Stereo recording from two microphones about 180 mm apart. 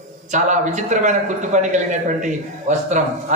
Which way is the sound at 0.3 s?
40° right (ahead or behind).